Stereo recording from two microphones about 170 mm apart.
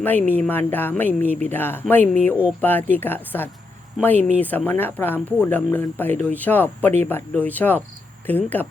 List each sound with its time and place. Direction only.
0.0 s speech: 10° left (ahead or behind)